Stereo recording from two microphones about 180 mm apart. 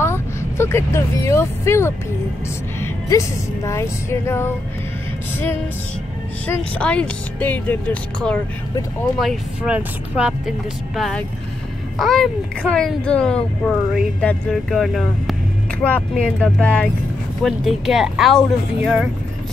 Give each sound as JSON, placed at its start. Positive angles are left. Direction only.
{"t": 0.0, "sound": "a woman's voice", "side_deg": 15}
{"t": 6.4, "sound": "a woman's voice", "side_deg": 5}
{"t": 9.2, "sound": "a woman's voice", "side_deg": -5}